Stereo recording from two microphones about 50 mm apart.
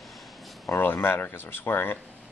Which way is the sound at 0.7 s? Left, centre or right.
Left.